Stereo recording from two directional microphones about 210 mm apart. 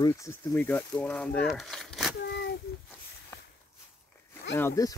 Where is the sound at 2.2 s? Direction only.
55° left (ahead or behind).